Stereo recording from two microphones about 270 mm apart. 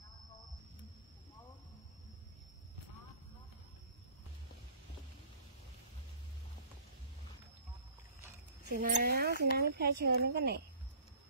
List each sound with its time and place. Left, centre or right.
8.7 s speech: right